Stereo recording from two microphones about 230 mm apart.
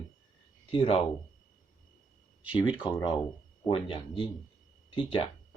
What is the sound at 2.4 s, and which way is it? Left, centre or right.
Speech, left.